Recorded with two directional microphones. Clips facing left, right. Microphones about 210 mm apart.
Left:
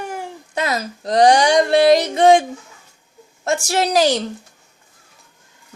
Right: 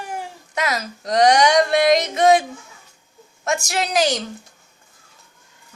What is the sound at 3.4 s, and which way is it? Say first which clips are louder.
Speech: left 4 dB; 35° left (ahead or behind).